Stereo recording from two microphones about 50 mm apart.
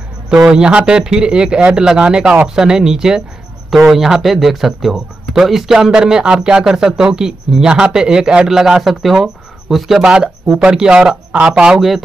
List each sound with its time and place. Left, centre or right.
0.3 s speech: centre
10.0 s speech: centre